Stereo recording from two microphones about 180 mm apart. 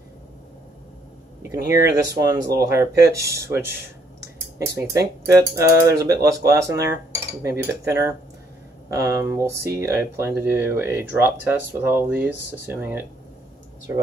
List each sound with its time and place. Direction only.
1.4 s speech: 15° right (ahead or behind)